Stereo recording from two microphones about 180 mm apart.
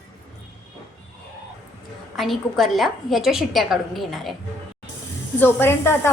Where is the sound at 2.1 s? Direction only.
Centre (ahead or behind).